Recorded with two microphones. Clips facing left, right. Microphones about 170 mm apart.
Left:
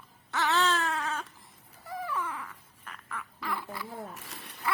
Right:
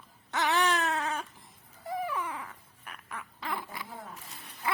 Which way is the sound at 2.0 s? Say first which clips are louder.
Left 1 dB; 15° right (ahead or behind).